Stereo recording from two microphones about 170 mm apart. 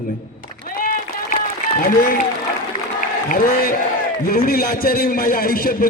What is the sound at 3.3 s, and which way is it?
A man's voice, 55° left (ahead or behind).